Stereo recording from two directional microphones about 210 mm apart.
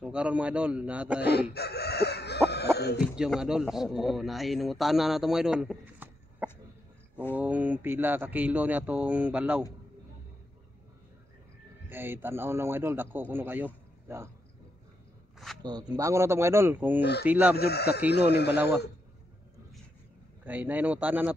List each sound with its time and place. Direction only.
0.0 s speech: 5° right (ahead or behind)
1.5 s chicken: 50° left (ahead or behind)
2.5 s cough: 50° left (ahead or behind)
3.0 s a man's voice: 5° right (ahead or behind)
11.9 s a man's voice: 10° right (ahead or behind)
15.3 s a sound: centre (ahead or behind)
15.6 s a man's voice: 15° right (ahead or behind)
17.6 s speech: 50° left (ahead or behind)
20.4 s a man's voice: 5° right (ahead or behind)